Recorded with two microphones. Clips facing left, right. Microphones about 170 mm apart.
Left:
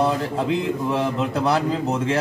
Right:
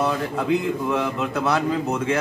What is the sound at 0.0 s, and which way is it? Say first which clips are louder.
Speech: left 2 dB; 30° left (ahead or behind).